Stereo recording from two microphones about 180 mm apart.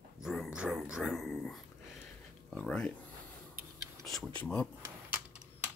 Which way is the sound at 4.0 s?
Centre (ahead or behind).